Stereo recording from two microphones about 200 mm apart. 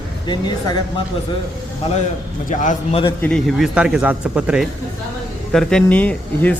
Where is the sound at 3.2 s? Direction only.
Centre (ahead or behind).